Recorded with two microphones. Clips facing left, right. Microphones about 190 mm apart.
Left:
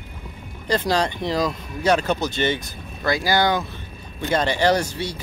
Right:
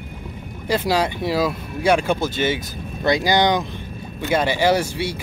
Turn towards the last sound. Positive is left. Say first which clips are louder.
# right 2 dB
turn(degrees=-10)  # may be behind; listen again after turning